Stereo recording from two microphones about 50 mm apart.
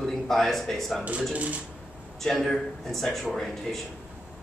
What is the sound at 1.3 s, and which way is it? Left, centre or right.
Speech, right.